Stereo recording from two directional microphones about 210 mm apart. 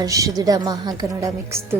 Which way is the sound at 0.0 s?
15° right (ahead or behind).